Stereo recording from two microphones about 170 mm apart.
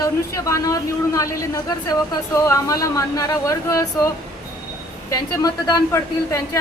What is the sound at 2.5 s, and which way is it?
A woman's voice, 20° left (ahead or behind).